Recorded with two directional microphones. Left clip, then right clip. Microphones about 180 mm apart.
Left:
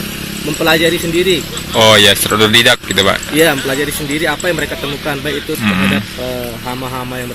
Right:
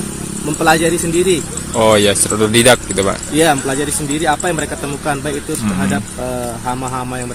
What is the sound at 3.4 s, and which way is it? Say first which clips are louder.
Speech: left 1 dB; 15° right (ahead or behind).